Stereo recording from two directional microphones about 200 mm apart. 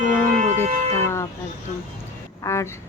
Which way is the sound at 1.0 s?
15° left (ahead or behind).